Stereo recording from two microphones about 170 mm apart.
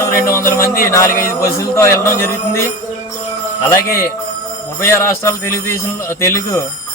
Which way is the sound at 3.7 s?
15° left (ahead or behind).